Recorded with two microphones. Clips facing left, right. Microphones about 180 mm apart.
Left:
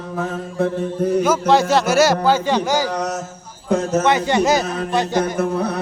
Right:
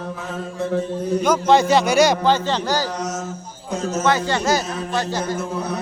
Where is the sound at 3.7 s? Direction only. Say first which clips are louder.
Left 7 dB; 60° left (ahead or behind).